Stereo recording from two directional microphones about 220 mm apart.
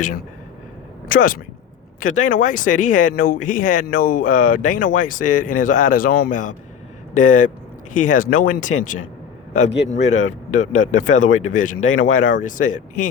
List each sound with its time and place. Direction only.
1.0 s a man's voice: 40° left (ahead or behind)